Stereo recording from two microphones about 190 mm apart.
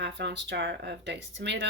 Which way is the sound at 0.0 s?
65° right (ahead or behind).